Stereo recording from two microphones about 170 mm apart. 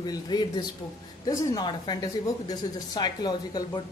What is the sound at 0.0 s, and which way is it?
A woman's voice, 25° left (ahead or behind).